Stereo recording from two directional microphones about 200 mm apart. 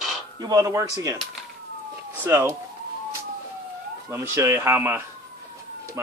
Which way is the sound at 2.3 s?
10° right (ahead or behind).